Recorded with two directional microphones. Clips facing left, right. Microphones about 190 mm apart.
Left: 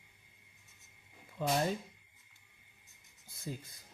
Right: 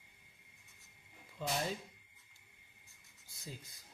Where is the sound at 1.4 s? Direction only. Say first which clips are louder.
Left 6 dB; 55° left (ahead or behind).